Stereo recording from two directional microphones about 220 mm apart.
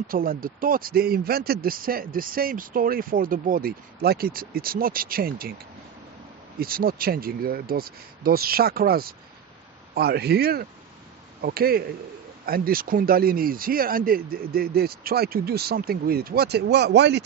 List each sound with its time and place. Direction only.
0.1 s speech: 40° right (ahead or behind)
6.6 s speech: 40° right (ahead or behind)